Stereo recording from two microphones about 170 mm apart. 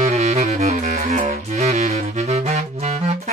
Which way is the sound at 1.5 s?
40° right (ahead or behind).